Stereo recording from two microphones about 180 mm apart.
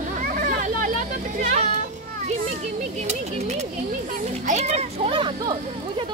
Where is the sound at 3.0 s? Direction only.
40° right (ahead or behind).